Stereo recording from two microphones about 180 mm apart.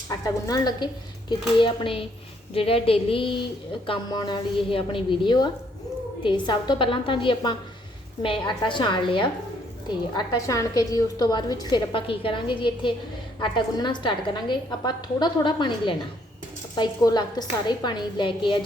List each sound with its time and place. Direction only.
0.1 s a woman's voice: 20° left (ahead or behind)